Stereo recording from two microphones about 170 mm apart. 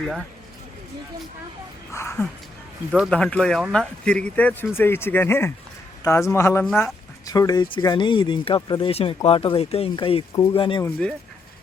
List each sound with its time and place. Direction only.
0.0 s speech: 5° right (ahead or behind)
1.9 s speech: 15° left (ahead or behind)
2.9 s speech: 5° left (ahead or behind); by 10.8 s 30° left (ahead or behind)